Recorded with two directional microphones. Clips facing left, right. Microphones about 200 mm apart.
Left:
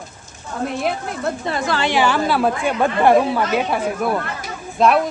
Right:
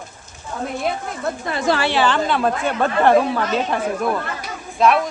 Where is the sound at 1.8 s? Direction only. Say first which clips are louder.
Left 1 dB; 15° left (ahead or behind).